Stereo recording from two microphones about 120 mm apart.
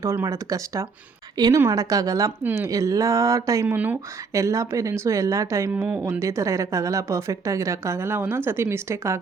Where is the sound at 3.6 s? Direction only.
15° right (ahead or behind).